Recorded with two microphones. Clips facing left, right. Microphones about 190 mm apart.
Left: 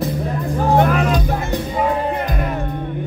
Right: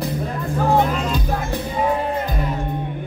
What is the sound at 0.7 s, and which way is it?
Music, 60° left (ahead or behind).